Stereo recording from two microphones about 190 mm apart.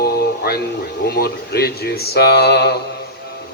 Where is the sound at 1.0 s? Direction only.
55° left (ahead or behind).